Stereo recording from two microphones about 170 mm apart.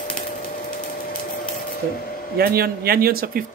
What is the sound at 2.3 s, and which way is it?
Speech, 65° right (ahead or behind).